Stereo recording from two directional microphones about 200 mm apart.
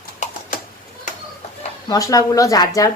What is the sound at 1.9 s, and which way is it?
Speech, 15° left (ahead or behind).